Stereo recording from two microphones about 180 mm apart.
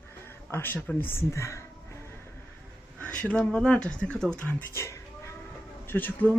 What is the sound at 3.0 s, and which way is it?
Speech, 5° left (ahead or behind).